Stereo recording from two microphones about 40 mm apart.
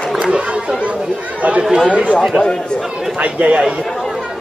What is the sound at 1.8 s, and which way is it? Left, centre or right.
Speech, right.